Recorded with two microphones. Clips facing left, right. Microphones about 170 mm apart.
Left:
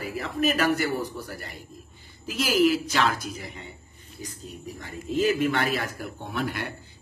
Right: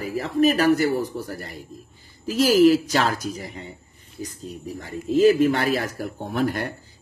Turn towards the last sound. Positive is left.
turn(degrees=-40)  # may be behind; listen again after turning